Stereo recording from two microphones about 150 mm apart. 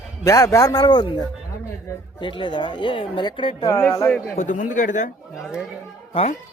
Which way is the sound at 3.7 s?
20° left (ahead or behind).